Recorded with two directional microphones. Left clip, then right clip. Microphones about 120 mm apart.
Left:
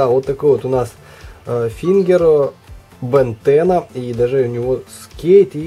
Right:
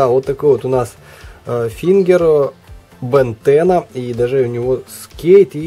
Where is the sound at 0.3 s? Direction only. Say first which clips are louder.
Right 1 dB; 25° right (ahead or behind).